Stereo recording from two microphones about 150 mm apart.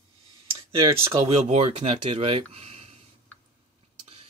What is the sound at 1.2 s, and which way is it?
Speech, 45° right (ahead or behind).